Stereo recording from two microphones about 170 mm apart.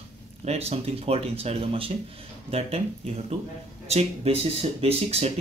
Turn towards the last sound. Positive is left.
turn(degrees=-35)  # may be behind; listen again after turning